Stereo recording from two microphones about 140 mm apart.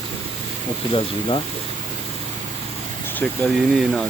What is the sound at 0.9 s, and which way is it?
Speech, 40° left (ahead or behind).